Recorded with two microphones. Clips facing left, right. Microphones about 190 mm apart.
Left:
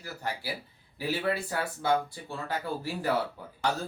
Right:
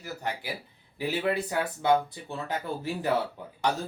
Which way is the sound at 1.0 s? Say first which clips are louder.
Right 2 dB; 20° right (ahead or behind).